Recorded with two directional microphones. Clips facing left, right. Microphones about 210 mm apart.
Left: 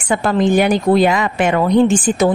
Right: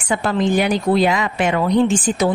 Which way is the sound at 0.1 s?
50° left (ahead or behind).